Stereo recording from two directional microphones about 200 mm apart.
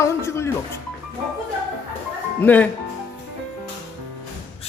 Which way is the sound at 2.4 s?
10° left (ahead or behind).